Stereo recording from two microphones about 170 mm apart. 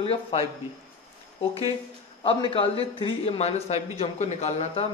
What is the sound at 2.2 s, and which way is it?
Speech, 30° left (ahead or behind).